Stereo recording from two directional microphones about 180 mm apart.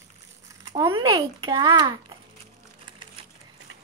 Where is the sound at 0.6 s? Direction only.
20° right (ahead or behind).